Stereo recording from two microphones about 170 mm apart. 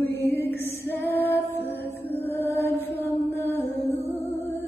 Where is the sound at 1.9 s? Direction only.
10° left (ahead or behind).